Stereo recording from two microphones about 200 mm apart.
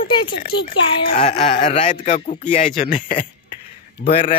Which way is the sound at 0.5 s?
25° left (ahead or behind).